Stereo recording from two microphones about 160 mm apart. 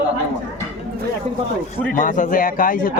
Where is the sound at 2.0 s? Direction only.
55° left (ahead or behind).